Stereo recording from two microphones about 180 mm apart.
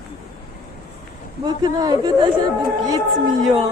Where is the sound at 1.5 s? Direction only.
20° right (ahead or behind).